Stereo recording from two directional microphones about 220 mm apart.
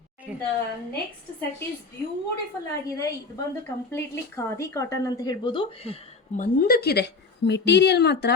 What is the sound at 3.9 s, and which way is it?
Speech, 15° left (ahead or behind).